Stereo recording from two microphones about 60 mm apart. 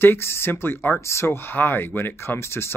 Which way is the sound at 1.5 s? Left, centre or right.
Left.